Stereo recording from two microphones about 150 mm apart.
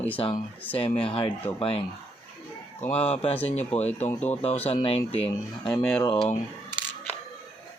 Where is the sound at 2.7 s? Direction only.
10° left (ahead or behind).